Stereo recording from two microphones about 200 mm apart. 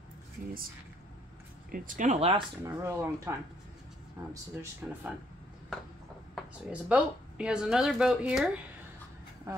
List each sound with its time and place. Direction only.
1.7 s speech: 40° right (ahead or behind)
2.6 s speech: 15° right (ahead or behind)
6.3 s speech: 5° right (ahead or behind)